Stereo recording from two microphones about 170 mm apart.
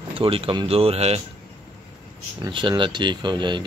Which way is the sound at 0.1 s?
30° right (ahead or behind).